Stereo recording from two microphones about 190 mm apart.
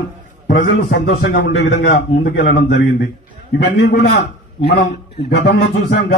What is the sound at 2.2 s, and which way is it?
Speech, 55° left (ahead or behind).